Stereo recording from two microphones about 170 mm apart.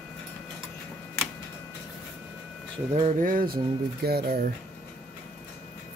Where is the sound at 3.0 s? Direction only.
45° right (ahead or behind); by 4.4 s 65° right (ahead or behind).